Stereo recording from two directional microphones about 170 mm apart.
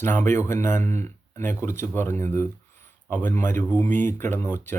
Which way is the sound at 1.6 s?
15° left (ahead or behind).